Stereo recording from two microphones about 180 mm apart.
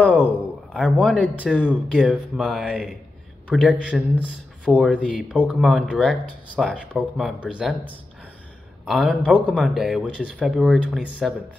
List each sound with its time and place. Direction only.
0.0 s a sound: 5° left (ahead or behind)
0.7 s speech: 5° right (ahead or behind)
8.8 s speech: 5° right (ahead or behind)